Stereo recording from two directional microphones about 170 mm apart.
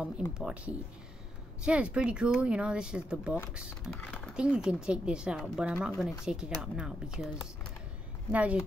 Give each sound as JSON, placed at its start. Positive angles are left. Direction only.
{"t": 0.4, "sound": "speech", "side_deg": -5}